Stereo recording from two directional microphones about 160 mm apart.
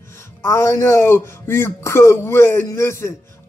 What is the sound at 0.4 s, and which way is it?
Speech, 15° left (ahead or behind).